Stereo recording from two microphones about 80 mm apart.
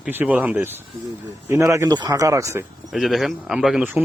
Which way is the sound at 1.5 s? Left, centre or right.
Right.